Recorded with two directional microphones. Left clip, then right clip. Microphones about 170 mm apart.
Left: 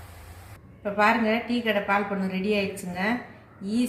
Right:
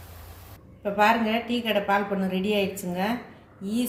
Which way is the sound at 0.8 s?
45° right (ahead or behind).